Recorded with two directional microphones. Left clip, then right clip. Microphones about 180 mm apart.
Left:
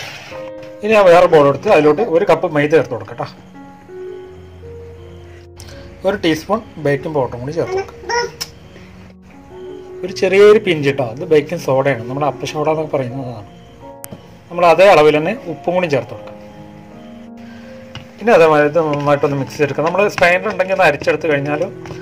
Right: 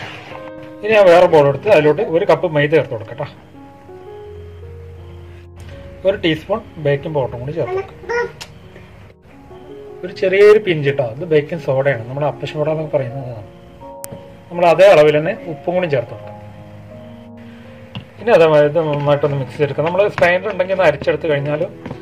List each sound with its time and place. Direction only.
0.8 s a man's voice: 35° left (ahead or behind)
6.0 s a man's voice: 35° left (ahead or behind)
10.0 s a man's voice: 35° left (ahead or behind)
14.5 s a man's voice: 40° left (ahead or behind)
18.2 s speech: 25° left (ahead or behind)